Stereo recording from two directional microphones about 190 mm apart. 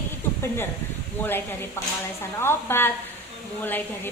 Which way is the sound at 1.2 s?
10° left (ahead or behind).